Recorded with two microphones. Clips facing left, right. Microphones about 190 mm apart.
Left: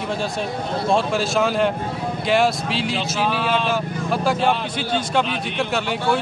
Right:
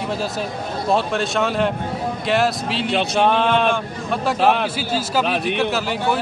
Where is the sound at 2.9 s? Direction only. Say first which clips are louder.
Right 9 dB; 60° right (ahead or behind).